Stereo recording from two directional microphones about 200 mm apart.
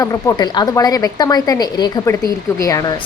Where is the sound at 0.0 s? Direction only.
15° left (ahead or behind).